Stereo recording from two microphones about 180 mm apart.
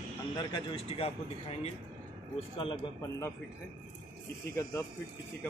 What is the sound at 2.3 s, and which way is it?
Speech, 30° left (ahead or behind).